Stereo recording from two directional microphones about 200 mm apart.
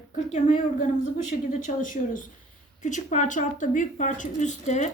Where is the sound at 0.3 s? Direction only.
35° left (ahead or behind).